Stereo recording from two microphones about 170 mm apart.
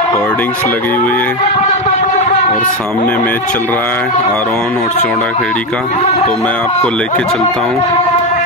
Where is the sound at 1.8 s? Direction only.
45° left (ahead or behind).